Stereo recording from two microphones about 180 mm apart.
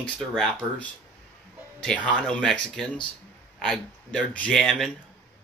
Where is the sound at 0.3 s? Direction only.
5° left (ahead or behind).